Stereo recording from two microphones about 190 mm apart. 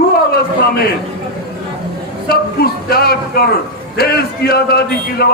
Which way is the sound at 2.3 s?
55° left (ahead or behind).